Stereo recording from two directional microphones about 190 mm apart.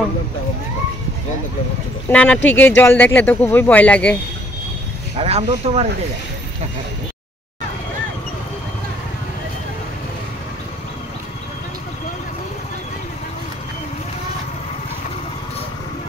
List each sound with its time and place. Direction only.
2.0 s speech: 5° left (ahead or behind)
5.1 s speech: 30° right (ahead or behind)